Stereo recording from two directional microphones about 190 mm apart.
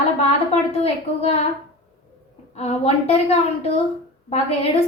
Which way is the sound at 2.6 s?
35° left (ahead or behind).